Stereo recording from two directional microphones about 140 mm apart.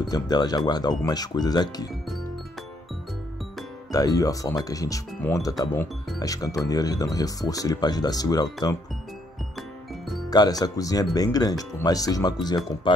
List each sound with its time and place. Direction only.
0.0 s speech: 30° left (ahead or behind)
3.9 s speech: 25° left (ahead or behind)
9.6 s music: centre (ahead or behind)
10.3 s speech: 30° left (ahead or behind)